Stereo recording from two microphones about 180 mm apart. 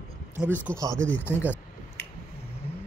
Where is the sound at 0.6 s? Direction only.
15° right (ahead or behind).